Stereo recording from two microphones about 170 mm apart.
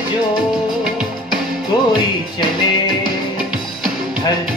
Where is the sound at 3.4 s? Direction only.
5° right (ahead or behind).